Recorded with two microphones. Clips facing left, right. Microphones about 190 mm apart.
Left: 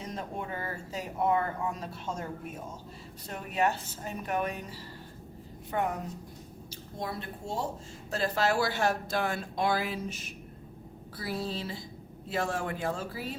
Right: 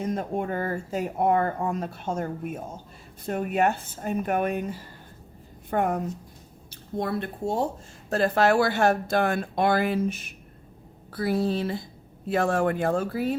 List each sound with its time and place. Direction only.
0.0 s speech: 50° right (ahead or behind)
7.0 s speech: 60° right (ahead or behind)